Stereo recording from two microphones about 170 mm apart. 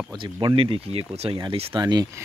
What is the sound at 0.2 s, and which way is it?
Speech, 25° right (ahead or behind).